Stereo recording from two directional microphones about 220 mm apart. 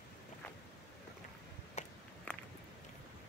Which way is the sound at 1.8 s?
30° left (ahead or behind).